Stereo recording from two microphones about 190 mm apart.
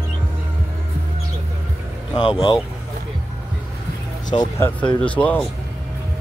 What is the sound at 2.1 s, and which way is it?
Speech, 25° left (ahead or behind).